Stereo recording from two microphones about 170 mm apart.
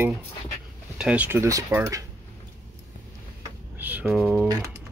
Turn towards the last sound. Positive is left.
turn(degrees=0)  # may be behind; listen again after turning